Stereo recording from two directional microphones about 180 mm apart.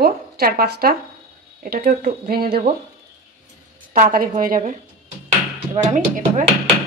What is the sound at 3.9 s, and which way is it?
Speech, 50° right (ahead or behind).